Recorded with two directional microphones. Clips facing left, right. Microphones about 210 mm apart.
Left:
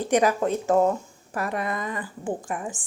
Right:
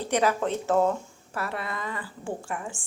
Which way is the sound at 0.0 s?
15° left (ahead or behind).